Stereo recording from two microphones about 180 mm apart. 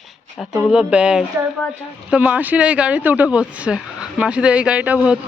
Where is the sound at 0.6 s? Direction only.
5° right (ahead or behind).